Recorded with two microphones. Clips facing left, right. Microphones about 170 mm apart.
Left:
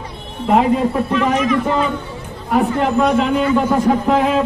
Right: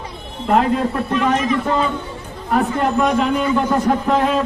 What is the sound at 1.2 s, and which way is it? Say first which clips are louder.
A man's voice: even; centre (ahead or behind).